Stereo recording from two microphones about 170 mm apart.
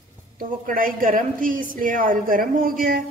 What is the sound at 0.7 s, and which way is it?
A woman's voice, 55° right (ahead or behind).